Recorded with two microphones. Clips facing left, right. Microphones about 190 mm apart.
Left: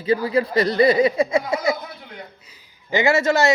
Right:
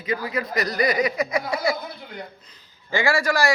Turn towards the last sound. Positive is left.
turn(degrees=25)  # may be behind; listen again after turning